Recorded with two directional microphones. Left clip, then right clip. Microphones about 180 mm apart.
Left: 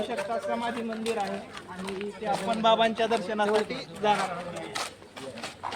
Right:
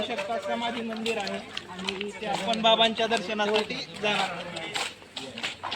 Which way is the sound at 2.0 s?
5° right (ahead or behind).